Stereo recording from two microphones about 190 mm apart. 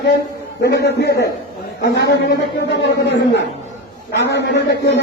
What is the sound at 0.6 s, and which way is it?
A man's voice, 60° left (ahead or behind).